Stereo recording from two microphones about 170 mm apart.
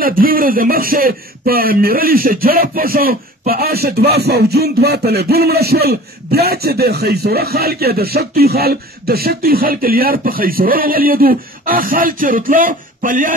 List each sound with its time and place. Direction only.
0.0 s speech: 55° right (ahead or behind)